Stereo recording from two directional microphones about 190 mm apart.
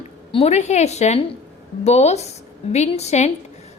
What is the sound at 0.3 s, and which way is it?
A woman's voice, 30° left (ahead or behind).